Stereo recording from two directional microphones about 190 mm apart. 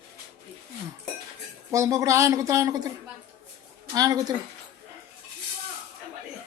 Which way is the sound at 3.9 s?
20° right (ahead or behind).